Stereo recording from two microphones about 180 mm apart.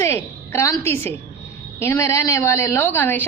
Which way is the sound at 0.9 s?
10° left (ahead or behind).